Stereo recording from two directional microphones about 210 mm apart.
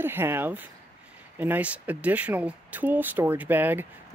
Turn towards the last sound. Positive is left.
turn(degrees=-10)  # may be behind; listen again after turning